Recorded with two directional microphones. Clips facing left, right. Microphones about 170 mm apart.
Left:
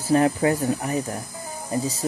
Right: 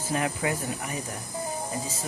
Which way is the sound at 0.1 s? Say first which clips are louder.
Left 9 dB; 35° left (ahead or behind).